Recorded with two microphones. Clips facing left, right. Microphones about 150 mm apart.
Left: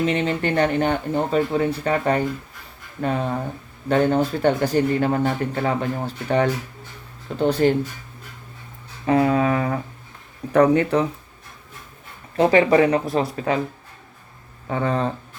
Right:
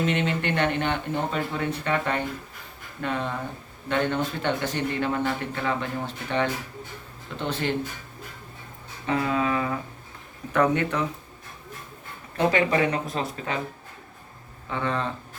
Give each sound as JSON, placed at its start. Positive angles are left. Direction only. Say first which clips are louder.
{"t": 0.1, "sound": "speech", "louder": "left 4 dB", "side_deg": 35}
{"t": 9.0, "sound": "a sound", "louder": "left 7 dB", "side_deg": 40}
{"t": 10.5, "sound": "speech", "louder": "left 7 dB", "side_deg": 35}
{"t": 12.4, "sound": "speech", "louder": "left 7 dB", "side_deg": 30}
{"t": 14.7, "sound": "speech", "louder": "left 5 dB", "side_deg": 40}